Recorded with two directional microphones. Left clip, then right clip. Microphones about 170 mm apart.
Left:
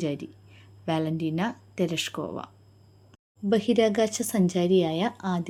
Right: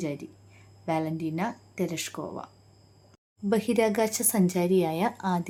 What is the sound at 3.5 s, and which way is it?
A woman's voice, 5° left (ahead or behind).